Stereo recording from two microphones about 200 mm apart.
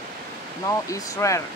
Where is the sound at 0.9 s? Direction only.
15° left (ahead or behind).